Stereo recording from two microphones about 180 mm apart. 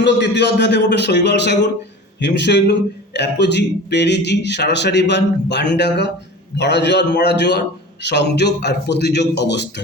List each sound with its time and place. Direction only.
0.0 s a man's voice: 70° left (ahead or behind)